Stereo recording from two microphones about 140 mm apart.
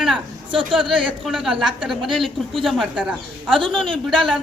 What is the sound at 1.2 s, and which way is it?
A woman's voice, centre (ahead or behind).